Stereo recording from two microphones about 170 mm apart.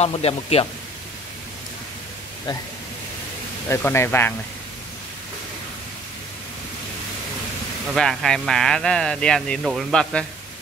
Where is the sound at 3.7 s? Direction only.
15° left (ahead or behind).